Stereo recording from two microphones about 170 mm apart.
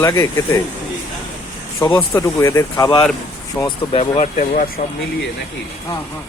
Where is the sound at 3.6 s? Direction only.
30° left (ahead or behind); by 4.7 s 50° left (ahead or behind).